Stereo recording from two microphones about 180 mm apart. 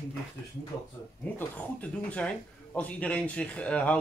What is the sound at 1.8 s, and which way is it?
Speech, 5° left (ahead or behind).